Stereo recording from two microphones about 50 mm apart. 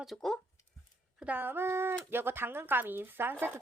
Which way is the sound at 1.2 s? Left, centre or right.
Right.